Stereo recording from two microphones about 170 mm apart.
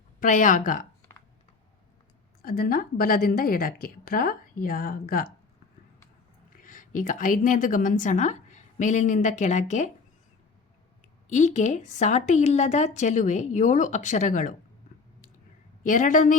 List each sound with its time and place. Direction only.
0.2 s speech: 50° left (ahead or behind)
2.4 s a woman's voice: 60° left (ahead or behind)
6.6 s a woman's voice: 50° left (ahead or behind)
11.3 s speech: 45° left (ahead or behind)
15.8 s speech: 50° left (ahead or behind)